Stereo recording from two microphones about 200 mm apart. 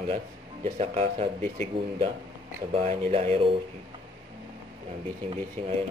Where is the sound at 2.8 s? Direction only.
30° right (ahead or behind).